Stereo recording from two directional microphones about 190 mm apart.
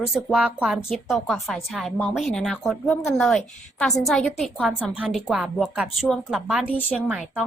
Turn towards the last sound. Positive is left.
turn(degrees=-5)  # may be behind; listen again after turning